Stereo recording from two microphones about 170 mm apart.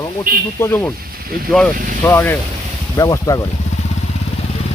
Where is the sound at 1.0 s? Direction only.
60° right (ahead or behind).